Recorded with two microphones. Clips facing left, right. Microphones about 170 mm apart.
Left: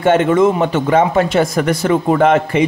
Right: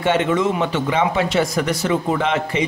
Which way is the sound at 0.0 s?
50° left (ahead or behind).